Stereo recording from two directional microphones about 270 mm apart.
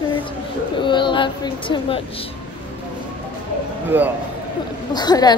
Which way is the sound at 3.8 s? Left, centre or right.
Centre.